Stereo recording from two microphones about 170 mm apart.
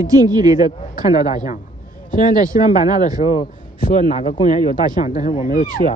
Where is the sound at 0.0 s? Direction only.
20° right (ahead or behind).